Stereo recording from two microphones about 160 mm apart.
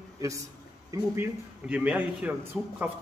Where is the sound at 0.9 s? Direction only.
15° right (ahead or behind).